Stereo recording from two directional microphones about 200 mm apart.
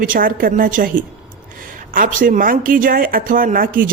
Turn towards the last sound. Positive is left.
turn(degrees=-45)  # may be behind; listen again after turning